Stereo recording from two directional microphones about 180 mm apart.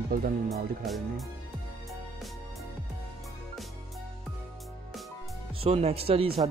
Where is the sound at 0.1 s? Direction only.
55° right (ahead or behind).